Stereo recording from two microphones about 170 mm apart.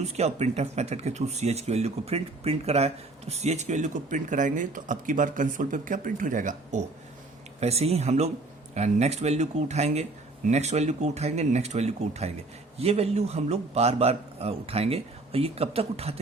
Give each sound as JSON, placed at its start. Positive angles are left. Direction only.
{"t": 0.0, "sound": "speech", "side_deg": -40}